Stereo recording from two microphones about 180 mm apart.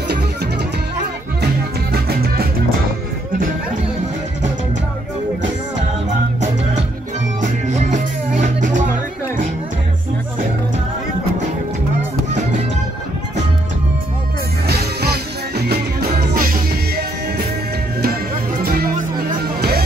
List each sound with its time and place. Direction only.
1.4 s music: 60° right (ahead or behind)
7.4 s music: 40° right (ahead or behind)
14.7 s music: 60° right (ahead or behind)
18.6 s music: 55° right (ahead or behind)